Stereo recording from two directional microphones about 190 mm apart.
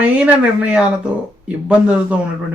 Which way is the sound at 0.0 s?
5° right (ahead or behind).